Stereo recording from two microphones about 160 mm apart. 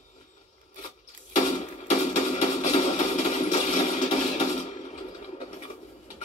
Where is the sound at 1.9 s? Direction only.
45° left (ahead or behind).